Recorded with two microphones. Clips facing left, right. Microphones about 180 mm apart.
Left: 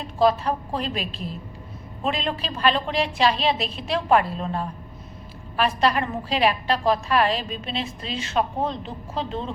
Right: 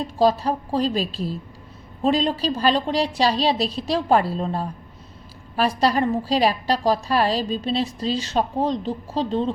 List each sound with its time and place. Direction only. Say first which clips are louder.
0.2 s a woman's voice: right 1 dB; 35° right (ahead or behind)